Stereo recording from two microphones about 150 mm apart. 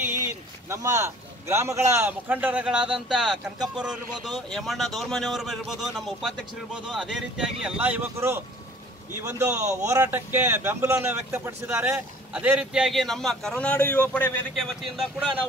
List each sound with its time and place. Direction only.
0.7 s speech: 20° right (ahead or behind); by 14.3 s 10° left (ahead or behind)
14.5 s speech: centre (ahead or behind)